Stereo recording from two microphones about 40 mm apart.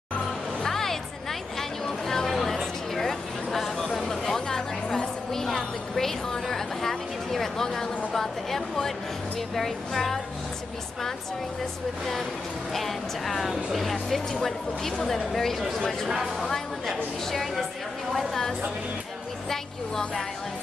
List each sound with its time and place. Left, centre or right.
0.6 s music: centre
1.6 s a sound: centre
9.6 s speech: centre
12.7 s speech: centre
16.1 s speech: centre
19.5 s speech: centre